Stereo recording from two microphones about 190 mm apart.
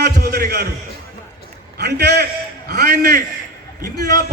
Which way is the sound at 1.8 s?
60° right (ahead or behind).